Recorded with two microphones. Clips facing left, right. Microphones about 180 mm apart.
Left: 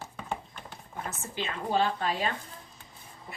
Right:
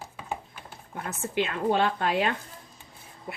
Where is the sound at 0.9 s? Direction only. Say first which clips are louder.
Right 6 dB; 60° right (ahead or behind).